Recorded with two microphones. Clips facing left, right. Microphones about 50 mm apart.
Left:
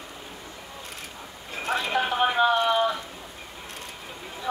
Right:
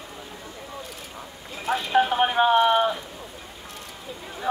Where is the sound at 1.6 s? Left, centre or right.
Left.